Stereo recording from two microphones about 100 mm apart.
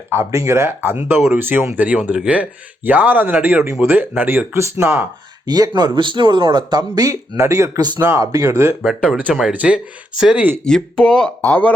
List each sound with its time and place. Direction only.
0.1 s speech: 25° right (ahead or behind)
5.5 s speech: 40° right (ahead or behind)
9.0 s speech: 10° right (ahead or behind)
10.6 s speech: 5° left (ahead or behind)